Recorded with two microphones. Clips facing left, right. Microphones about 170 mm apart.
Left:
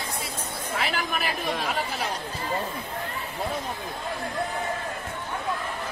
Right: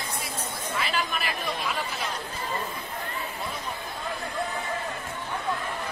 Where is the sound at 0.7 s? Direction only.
65° left (ahead or behind).